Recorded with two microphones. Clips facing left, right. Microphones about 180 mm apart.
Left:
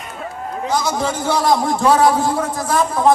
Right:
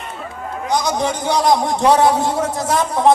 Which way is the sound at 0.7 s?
15° right (ahead or behind).